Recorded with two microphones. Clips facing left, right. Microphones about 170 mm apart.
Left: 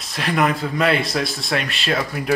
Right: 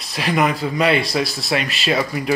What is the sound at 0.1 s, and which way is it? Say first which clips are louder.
Speech: right 1 dB; centre (ahead or behind).